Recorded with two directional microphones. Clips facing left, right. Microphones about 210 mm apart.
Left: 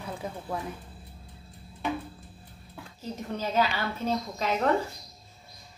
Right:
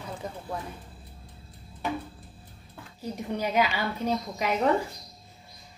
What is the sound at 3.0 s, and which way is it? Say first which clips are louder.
A woman's voice: right 3 dB; 15° right (ahead or behind).